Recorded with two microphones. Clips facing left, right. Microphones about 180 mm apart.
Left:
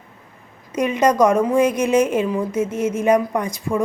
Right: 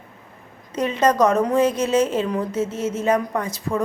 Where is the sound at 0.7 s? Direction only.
10° left (ahead or behind).